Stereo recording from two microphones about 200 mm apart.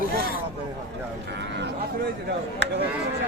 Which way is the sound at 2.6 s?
60° right (ahead or behind).